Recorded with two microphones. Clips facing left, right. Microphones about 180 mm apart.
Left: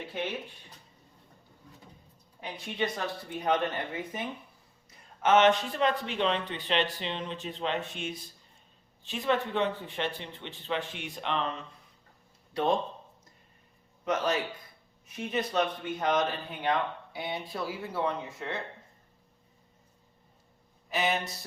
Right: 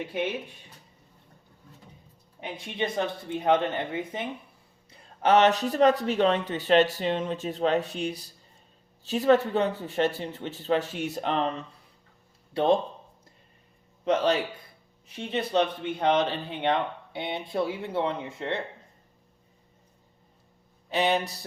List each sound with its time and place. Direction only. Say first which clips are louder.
2.4 s speech: right 2 dB; 25° right (ahead or behind); by 11.4 s 40° right (ahead or behind)
14.0 s a man's voice: right 5 dB; 30° right (ahead or behind)
20.9 s speech: right 5 dB; 30° right (ahead or behind)